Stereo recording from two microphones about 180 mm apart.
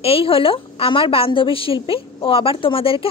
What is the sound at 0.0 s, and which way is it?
Speech, 30° left (ahead or behind).